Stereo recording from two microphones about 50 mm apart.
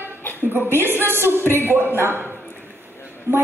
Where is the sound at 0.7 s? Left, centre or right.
Right.